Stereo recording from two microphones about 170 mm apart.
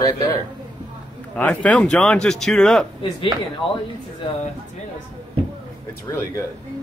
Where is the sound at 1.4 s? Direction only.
10° left (ahead or behind).